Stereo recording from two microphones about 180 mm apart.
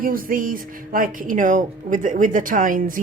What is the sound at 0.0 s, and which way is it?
A woman's voice, 50° right (ahead or behind).